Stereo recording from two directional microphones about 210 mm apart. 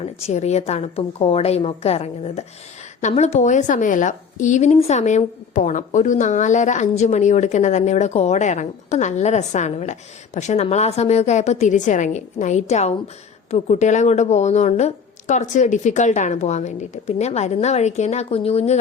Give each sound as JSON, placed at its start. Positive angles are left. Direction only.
{"t": 0.0, "sound": "a woman's voice", "side_deg": 30}